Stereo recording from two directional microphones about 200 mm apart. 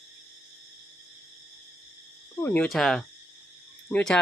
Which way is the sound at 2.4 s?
10° left (ahead or behind).